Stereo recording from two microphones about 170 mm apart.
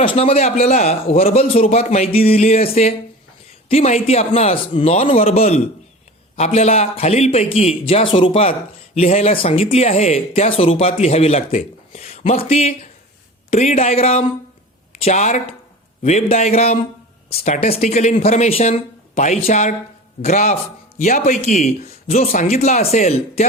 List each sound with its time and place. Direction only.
0.0 s a man's voice: 35° left (ahead or behind)